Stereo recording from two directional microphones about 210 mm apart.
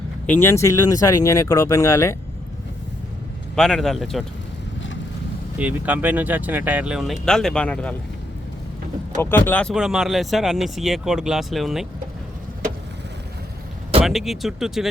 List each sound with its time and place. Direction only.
0.3 s speech: 10° left (ahead or behind)
3.5 s speech: centre (ahead or behind)
5.5 s speech: 5° right (ahead or behind)
9.2 s speech: 10° left (ahead or behind)
14.0 s speech: centre (ahead or behind)